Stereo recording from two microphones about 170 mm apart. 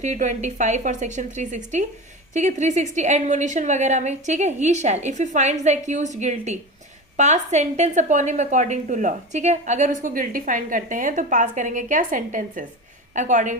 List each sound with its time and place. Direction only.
0.0 s a woman's voice: 45° right (ahead or behind)